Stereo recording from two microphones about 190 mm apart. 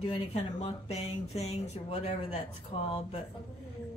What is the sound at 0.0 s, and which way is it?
Speech, 30° left (ahead or behind).